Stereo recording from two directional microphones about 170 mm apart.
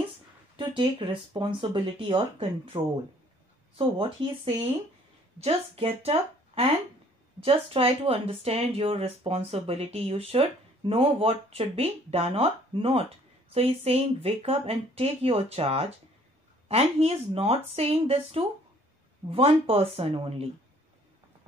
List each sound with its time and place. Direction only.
0.6 s speech: 30° right (ahead or behind)